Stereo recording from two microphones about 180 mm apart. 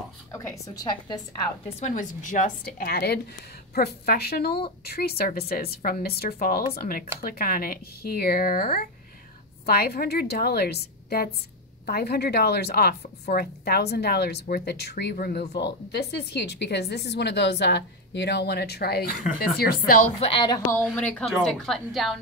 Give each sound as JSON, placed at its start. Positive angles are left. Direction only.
{"t": 0.3, "sound": "a woman's voice", "side_deg": 20}
{"t": 1.8, "sound": "a woman's voice", "side_deg": 40}
{"t": 20.2, "sound": "a woman's voice", "side_deg": 30}
{"t": 20.7, "sound": "a woman's voice", "side_deg": 5}